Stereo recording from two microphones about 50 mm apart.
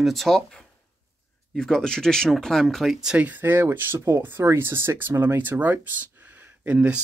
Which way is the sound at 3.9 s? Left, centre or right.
Right.